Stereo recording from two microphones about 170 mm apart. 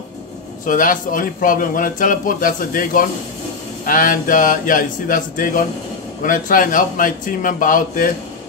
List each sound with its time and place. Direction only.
0.7 s a man's voice: 55° left (ahead or behind)